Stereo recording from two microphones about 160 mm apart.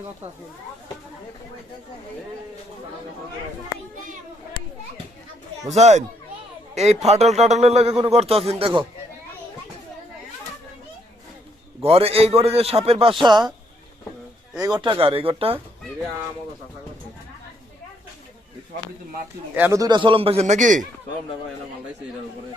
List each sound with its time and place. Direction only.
5.6 s a man's voice: 45° right (ahead or behind)
11.8 s a man's voice: 35° right (ahead or behind)
14.6 s a man's voice: 25° right (ahead or behind)
19.5 s speech: 10° right (ahead or behind)
19.8 s a man's voice: 30° right (ahead or behind); by 20.8 s 50° right (ahead or behind)